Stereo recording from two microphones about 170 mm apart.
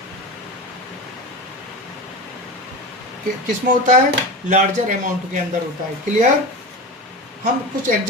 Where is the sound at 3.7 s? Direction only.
50° right (ahead or behind).